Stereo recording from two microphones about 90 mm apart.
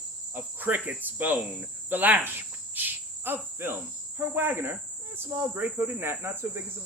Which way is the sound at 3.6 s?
25° right (ahead or behind).